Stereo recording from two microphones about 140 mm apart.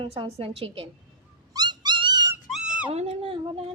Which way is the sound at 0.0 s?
40° right (ahead or behind).